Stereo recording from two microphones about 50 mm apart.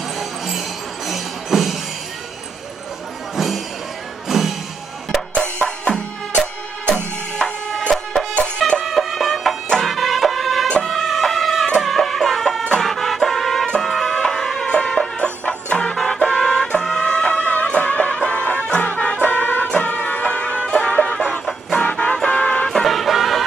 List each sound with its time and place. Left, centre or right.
0.2 s music: centre
3.3 s music: centre
5.3 s music: left
7.9 s printer: centre
8.5 s music: centre
8.8 s music: centre
10.9 s emergency vehicle: centre
11.8 s music: centre
14.7 s music: centre
22.7 s music: centre